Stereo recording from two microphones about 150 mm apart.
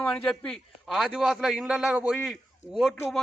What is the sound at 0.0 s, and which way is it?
A man's voice, 10° left (ahead or behind).